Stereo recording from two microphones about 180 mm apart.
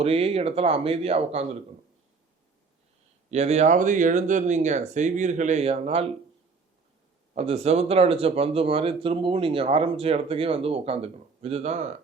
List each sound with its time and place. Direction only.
0.0 s speech: 35° right (ahead or behind)
3.2 s speech: 40° right (ahead or behind)
7.3 s speech: 35° right (ahead or behind)